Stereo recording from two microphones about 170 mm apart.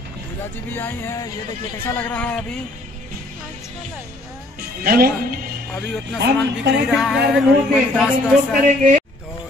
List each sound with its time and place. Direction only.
0.7 s speech: 15° left (ahead or behind)
4.8 s speech: 60° right (ahead or behind)
6.1 s speech: 90° right
6.9 s speech: centre (ahead or behind)
8.6 s a man's voice: 45° right (ahead or behind)